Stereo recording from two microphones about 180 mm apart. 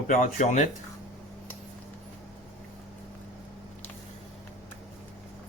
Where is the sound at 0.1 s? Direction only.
45° left (ahead or behind).